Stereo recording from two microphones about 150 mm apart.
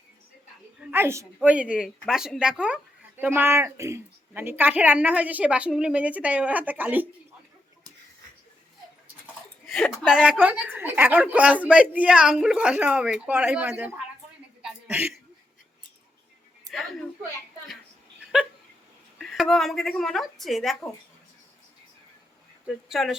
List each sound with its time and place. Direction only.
0.9 s a woman's voice: 15° right (ahead or behind)
9.6 s speech: centre (ahead or behind)
14.6 s a sound: 10° right (ahead or behind)
16.7 s a sound: centre (ahead or behind)
18.3 s hiccup: 5° right (ahead or behind)
19.2 s speech: centre (ahead or behind)
22.6 s speech: centre (ahead or behind)